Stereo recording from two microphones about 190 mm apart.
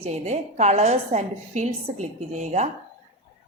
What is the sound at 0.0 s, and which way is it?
A woman's voice, 35° right (ahead or behind).